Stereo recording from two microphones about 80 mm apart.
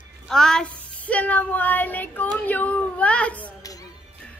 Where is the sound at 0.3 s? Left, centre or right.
Centre.